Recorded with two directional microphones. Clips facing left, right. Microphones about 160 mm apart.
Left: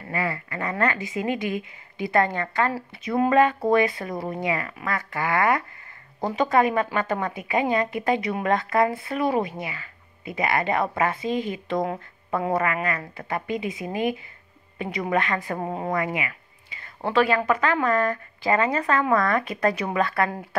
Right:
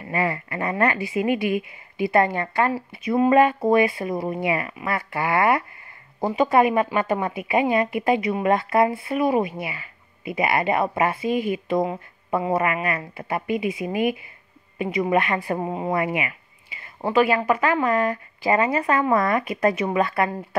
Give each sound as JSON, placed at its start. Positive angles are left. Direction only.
{"t": 0.1, "sound": "speech", "side_deg": -20}
{"t": 4.5, "sound": "speech", "side_deg": -20}
{"t": 6.2, "sound": "a woman's voice", "side_deg": -5}
{"t": 12.5, "sound": "speech", "side_deg": -20}
{"t": 15.3, "sound": "speech", "side_deg": -30}
{"t": 15.6, "sound": "speech", "side_deg": -5}
{"t": 15.9, "sound": "speech", "side_deg": -20}
{"t": 17.0, "sound": "speech", "side_deg": -5}